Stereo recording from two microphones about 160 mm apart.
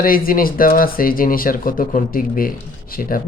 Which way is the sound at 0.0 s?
60° left (ahead or behind).